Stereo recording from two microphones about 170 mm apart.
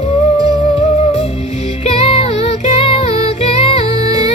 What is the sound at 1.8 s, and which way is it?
Music, 35° left (ahead or behind).